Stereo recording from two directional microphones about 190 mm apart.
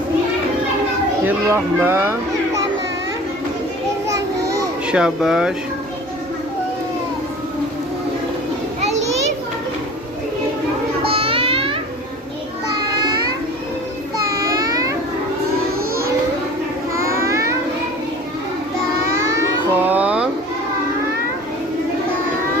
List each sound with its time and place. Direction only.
1.2 s speech: 15° right (ahead or behind)
4.9 s speech: 5° right (ahead or behind)
8.8 s children playing: 35° right (ahead or behind)
11.0 s music: 30° right (ahead or behind)
14.3 s a sound: 20° right (ahead or behind)
16.9 s music: 15° right (ahead or behind)
19.3 s child singing: 10° right (ahead or behind)